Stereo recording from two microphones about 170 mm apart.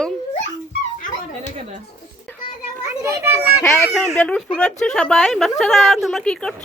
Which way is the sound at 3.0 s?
15° right (ahead or behind).